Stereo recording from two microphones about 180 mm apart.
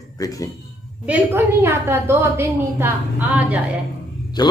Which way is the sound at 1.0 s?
10° right (ahead or behind).